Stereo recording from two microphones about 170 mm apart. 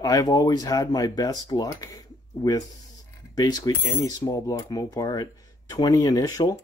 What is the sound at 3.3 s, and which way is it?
Speech, 25° left (ahead or behind).